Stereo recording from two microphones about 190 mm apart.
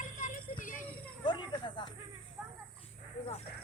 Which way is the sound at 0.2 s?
45° left (ahead or behind).